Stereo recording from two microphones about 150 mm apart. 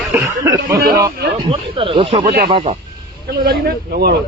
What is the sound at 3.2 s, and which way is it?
Speech, 90° right.